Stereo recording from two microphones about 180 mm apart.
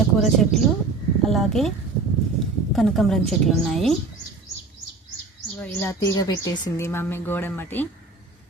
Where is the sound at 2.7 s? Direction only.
Centre (ahead or behind).